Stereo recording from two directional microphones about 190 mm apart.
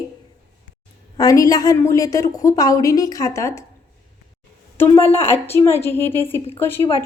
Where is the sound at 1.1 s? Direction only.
20° left (ahead or behind).